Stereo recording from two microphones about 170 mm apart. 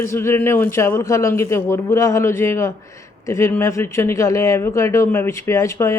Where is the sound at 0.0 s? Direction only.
15° left (ahead or behind).